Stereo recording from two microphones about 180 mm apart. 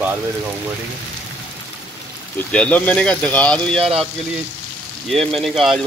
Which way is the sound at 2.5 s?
5° left (ahead or behind).